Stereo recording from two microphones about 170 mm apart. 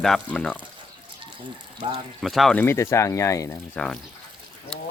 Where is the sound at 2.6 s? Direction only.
15° left (ahead or behind).